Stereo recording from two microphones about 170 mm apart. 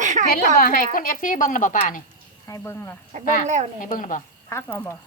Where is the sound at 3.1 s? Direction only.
45° right (ahead or behind).